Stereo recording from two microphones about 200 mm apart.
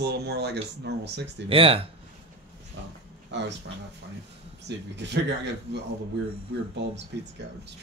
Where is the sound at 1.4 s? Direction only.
25° right (ahead or behind).